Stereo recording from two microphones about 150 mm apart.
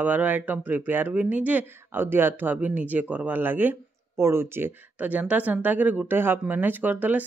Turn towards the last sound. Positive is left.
turn(degrees=-10)  # may be behind; listen again after turning